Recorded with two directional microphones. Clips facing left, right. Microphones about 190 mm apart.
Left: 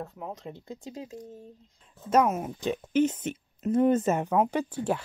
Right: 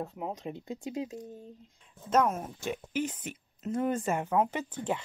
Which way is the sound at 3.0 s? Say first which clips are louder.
Left 13 dB; 25° left (ahead or behind).